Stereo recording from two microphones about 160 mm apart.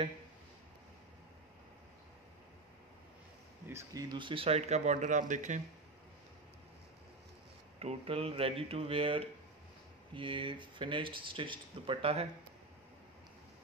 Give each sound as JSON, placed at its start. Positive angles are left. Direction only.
{"t": 3.6, "sound": "speech", "side_deg": -20}
{"t": 7.8, "sound": "speech", "side_deg": -35}